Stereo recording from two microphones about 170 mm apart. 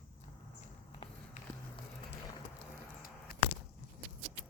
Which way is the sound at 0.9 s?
30° left (ahead or behind).